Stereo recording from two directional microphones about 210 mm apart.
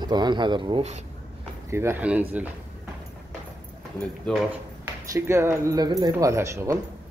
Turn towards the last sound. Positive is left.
turn(degrees=-15)  # may be behind; listen again after turning